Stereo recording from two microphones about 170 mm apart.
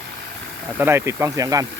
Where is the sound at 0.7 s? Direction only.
15° right (ahead or behind).